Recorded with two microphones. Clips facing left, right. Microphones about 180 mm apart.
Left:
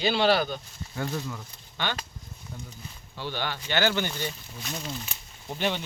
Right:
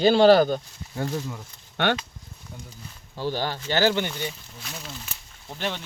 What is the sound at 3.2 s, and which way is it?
Speech, 40° right (ahead or behind).